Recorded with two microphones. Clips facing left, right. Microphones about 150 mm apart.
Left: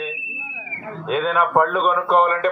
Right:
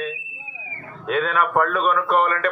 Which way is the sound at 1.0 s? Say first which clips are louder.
Left 2 dB; 25° left (ahead or behind).